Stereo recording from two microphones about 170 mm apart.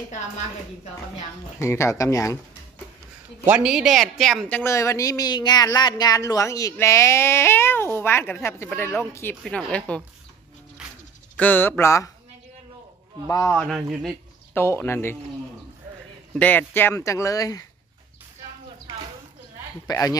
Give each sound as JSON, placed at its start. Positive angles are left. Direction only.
{"t": 1.6, "sound": "a woman's voice", "side_deg": 15}
{"t": 3.4, "sound": "a woman's voice", "side_deg": -5}
{"t": 9.4, "sound": "speech", "side_deg": 5}
{"t": 11.3, "sound": "a woman's voice", "side_deg": 10}
{"t": 13.5, "sound": "speech", "side_deg": 0}
{"t": 14.5, "sound": "a woman's voice", "side_deg": 15}
{"t": 16.3, "sound": "a woman's voice", "side_deg": 10}
{"t": 19.9, "sound": "speech", "side_deg": 20}